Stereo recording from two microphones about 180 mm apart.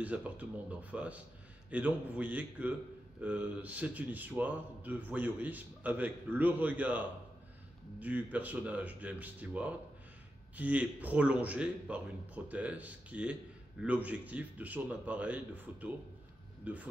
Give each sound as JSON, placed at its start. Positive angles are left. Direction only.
{"t": 0.0, "sound": "a man's voice", "side_deg": -10}